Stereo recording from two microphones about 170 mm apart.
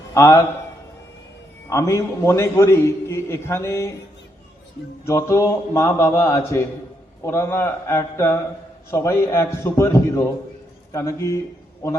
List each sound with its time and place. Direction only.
0.1 s a man's voice: 15° left (ahead or behind)
1.7 s a man's voice: 15° left (ahead or behind)
5.0 s a man's voice: 15° left (ahead or behind)